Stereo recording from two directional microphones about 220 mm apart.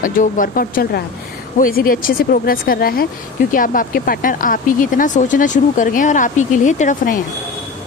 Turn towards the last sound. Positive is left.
turn(degrees=35)  # may be behind; listen again after turning